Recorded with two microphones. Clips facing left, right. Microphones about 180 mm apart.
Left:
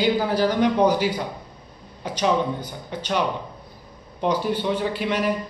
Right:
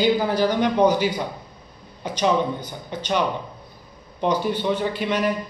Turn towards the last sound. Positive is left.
turn(degrees=5)  # may be behind; listen again after turning